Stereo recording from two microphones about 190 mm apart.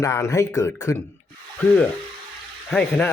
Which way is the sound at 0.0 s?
15° left (ahead or behind).